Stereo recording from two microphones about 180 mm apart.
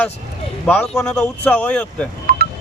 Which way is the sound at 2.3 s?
55° right (ahead or behind).